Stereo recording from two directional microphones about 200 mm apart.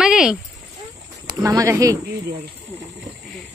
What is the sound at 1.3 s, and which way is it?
Speech, 15° right (ahead or behind).